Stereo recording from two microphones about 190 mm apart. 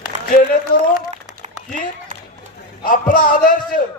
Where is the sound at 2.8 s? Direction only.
45° left (ahead or behind).